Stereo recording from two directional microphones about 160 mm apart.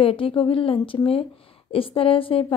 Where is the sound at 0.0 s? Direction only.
35° left (ahead or behind).